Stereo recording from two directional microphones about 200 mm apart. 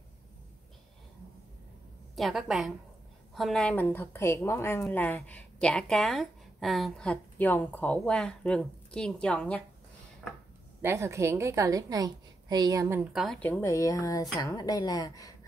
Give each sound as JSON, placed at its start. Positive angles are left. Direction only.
{"t": 2.1, "sound": "a woman's voice", "side_deg": 0}
{"t": 10.8, "sound": "a woman's voice", "side_deg": -15}